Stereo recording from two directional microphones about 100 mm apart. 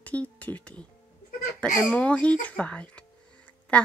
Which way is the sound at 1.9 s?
10° left (ahead or behind).